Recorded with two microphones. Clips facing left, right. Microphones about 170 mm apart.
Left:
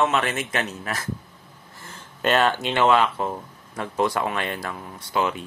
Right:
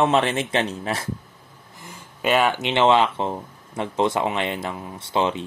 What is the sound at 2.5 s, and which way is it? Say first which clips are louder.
Speech: right 2 dB; 20° right (ahead or behind).